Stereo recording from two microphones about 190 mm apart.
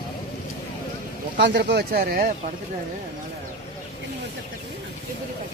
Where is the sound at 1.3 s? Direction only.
65° right (ahead or behind).